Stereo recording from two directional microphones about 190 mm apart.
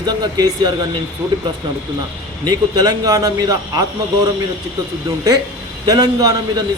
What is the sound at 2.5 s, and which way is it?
Speech, 20° right (ahead or behind).